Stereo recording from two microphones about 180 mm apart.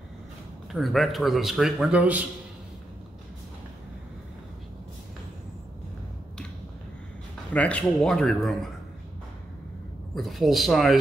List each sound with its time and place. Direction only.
0.7 s a man's voice: centre (ahead or behind)
7.5 s a man's voice: 5° left (ahead or behind)
10.1 s a man's voice: centre (ahead or behind)